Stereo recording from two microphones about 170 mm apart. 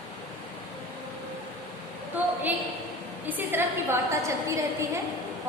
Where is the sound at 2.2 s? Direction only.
10° right (ahead or behind).